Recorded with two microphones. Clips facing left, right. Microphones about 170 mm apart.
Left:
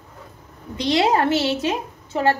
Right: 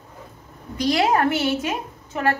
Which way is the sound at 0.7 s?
25° left (ahead or behind).